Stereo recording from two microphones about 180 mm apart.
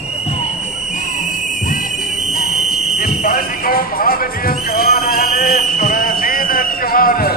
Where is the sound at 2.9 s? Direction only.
55° left (ahead or behind).